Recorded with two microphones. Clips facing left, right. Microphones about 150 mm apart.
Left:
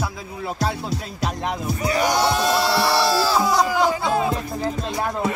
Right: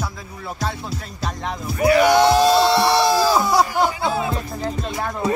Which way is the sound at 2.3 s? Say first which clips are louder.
Right 5 dB; 25° right (ahead or behind).